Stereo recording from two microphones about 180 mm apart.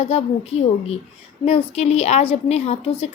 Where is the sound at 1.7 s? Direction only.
35° left (ahead or behind).